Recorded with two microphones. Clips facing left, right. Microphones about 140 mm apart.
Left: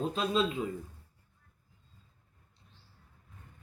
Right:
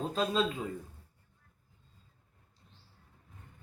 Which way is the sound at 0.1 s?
40° right (ahead or behind).